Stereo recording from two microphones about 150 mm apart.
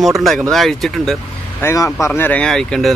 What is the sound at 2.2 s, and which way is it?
Speech, 10° left (ahead or behind).